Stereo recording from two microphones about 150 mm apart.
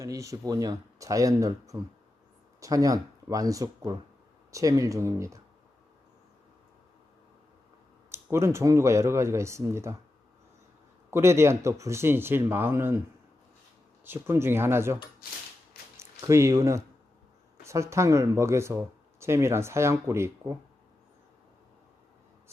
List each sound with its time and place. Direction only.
0.0 s speech: 20° right (ahead or behind)
8.1 s speech: 15° right (ahead or behind)
11.1 s speech: 20° right (ahead or behind)
14.0 s speech: 15° right (ahead or behind)
16.0 s speech: 20° right (ahead or behind)